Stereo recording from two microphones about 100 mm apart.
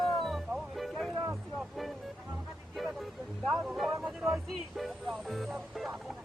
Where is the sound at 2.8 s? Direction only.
Centre (ahead or behind).